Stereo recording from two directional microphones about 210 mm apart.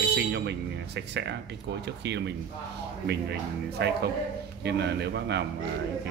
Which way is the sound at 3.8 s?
50° right (ahead or behind).